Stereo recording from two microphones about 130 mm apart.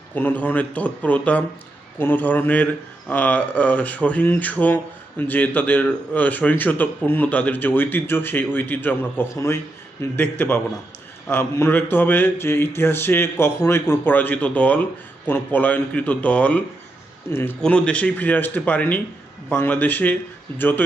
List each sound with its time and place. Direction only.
0.1 s speech: 15° left (ahead or behind)